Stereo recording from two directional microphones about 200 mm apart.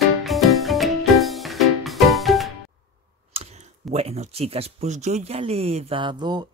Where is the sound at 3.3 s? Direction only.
30° right (ahead or behind).